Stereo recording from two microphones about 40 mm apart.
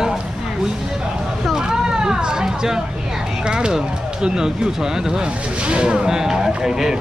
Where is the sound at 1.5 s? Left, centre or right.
Centre.